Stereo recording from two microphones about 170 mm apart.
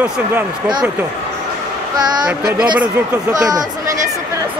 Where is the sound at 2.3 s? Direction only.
5° right (ahead or behind).